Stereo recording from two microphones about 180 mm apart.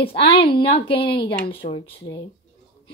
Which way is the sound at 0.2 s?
30° left (ahead or behind).